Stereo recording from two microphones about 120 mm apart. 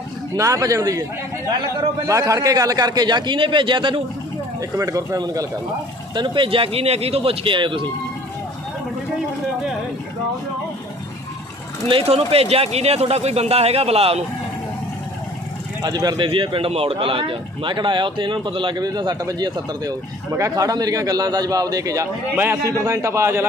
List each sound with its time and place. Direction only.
0.3 s a man's voice: 25° right (ahead or behind)
2.0 s speech: 25° right (ahead or behind); by 4.0 s 45° right (ahead or behind)
4.6 s a man's voice: 25° right (ahead or behind)
6.1 s speech: 40° right (ahead or behind)
11.9 s speech: 50° right (ahead or behind)
15.8 s a man's voice: 35° right (ahead or behind)